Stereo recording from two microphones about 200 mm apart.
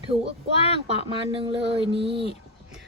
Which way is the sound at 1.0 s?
25° right (ahead or behind).